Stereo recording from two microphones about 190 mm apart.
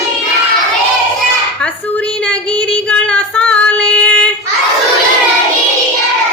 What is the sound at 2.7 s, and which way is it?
Child singing, 5° left (ahead or behind).